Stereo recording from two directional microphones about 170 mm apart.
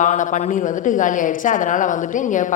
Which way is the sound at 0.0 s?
45° left (ahead or behind).